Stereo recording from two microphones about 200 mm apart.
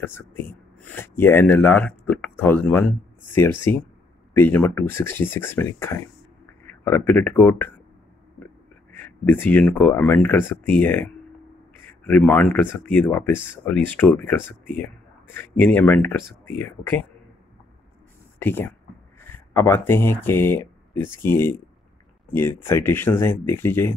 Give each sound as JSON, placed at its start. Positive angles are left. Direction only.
{"t": 0.0, "sound": "speech", "side_deg": 10}
{"t": 8.9, "sound": "speech", "side_deg": 10}
{"t": 12.1, "sound": "speech", "side_deg": 5}
{"t": 18.4, "sound": "speech", "side_deg": 10}